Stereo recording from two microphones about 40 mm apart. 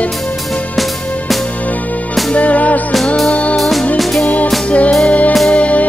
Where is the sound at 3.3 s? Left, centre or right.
Left.